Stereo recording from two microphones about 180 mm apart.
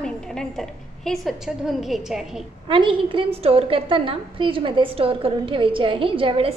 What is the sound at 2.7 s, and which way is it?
A woman's voice, 30° right (ahead or behind).